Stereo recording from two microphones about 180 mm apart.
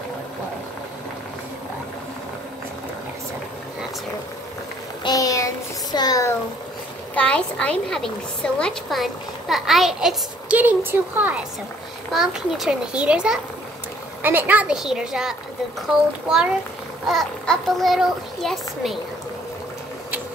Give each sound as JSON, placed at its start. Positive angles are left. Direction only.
{"t": 5.0, "sound": "child singing", "side_deg": 20}
{"t": 7.2, "sound": "speech", "side_deg": 5}